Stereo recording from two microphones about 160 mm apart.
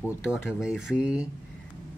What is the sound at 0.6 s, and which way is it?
Speech, 5° right (ahead or behind).